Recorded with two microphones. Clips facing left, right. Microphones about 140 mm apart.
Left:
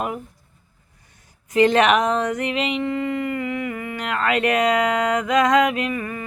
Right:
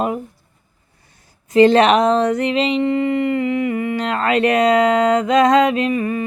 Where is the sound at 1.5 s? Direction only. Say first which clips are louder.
Right 5 dB; 30° right (ahead or behind).